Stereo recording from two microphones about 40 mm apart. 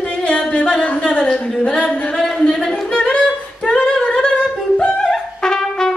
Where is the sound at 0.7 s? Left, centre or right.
Left.